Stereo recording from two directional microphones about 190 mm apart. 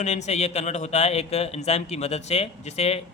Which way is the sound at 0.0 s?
35° left (ahead or behind).